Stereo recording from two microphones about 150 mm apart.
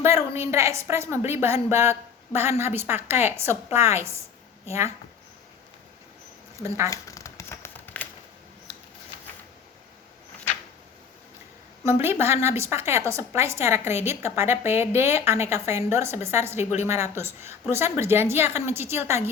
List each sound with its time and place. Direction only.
0.0 s a woman's voice: 20° right (ahead or behind)
6.6 s speech: 20° right (ahead or behind)
6.9 s a sound: 20° left (ahead or behind)
11.8 s a woman's voice: 15° right (ahead or behind)